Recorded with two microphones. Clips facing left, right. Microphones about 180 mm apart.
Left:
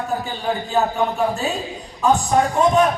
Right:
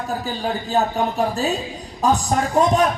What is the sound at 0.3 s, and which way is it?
A man's voice, 35° right (ahead or behind).